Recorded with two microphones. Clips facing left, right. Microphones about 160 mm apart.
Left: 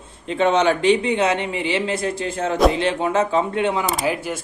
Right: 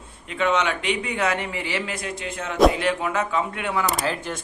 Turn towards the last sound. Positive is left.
turn(degrees=25)  # may be behind; listen again after turning